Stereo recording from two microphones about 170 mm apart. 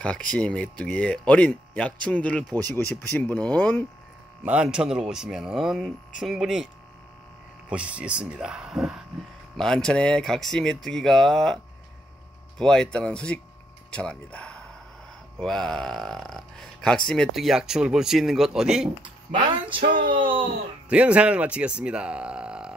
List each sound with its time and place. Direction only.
0.0 s speech: 5° left (ahead or behind)
4.5 s speech: 5° right (ahead or behind)
7.7 s speech: 5° right (ahead or behind)
19.9 s speech: 30° right (ahead or behind)
20.9 s speech: 5° right (ahead or behind)